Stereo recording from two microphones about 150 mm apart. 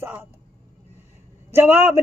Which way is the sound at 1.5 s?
15° right (ahead or behind).